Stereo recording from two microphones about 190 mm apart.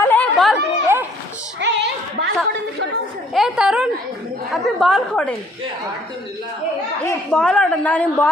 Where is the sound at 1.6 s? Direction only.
65° right (ahead or behind).